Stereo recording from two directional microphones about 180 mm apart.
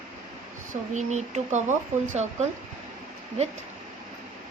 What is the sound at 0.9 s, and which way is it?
Speech, 40° right (ahead or behind).